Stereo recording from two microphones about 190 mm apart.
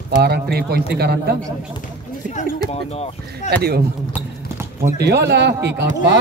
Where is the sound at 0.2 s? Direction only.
55° right (ahead or behind).